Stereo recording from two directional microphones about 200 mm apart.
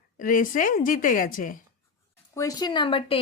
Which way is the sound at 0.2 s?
45° left (ahead or behind).